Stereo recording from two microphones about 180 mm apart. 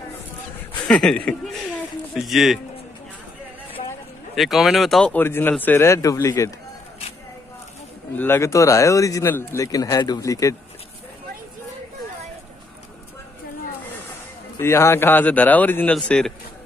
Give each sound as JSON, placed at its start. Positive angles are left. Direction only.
{"t": 0.8, "sound": "speech", "side_deg": 5}
{"t": 4.4, "sound": "speech", "side_deg": 0}
{"t": 8.2, "sound": "speech", "side_deg": 15}
{"t": 14.6, "sound": "speech", "side_deg": 15}